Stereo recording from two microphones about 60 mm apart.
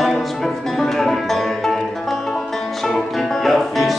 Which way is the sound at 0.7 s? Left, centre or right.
Centre.